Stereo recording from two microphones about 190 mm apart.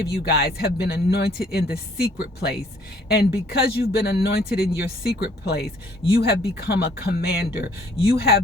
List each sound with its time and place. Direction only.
0.0 s speech: 55° left (ahead or behind)